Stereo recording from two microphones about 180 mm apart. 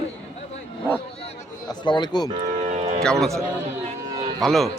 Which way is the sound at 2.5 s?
35° right (ahead or behind).